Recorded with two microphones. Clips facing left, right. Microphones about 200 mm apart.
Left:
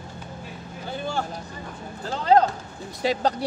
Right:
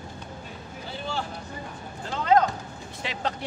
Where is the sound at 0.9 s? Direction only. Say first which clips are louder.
Left 4 dB; 50° left (ahead or behind).